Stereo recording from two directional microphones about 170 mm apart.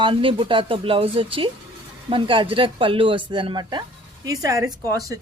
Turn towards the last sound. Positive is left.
turn(degrees=-20)  # may be behind; listen again after turning